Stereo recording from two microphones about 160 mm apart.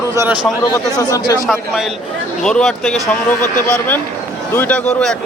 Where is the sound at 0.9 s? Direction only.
25° left (ahead or behind).